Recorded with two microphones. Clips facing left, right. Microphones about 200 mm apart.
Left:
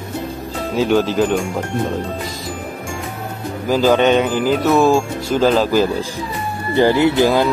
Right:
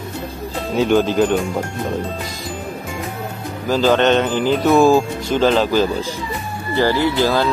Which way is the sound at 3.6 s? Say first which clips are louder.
Left 1 dB; 10° left (ahead or behind).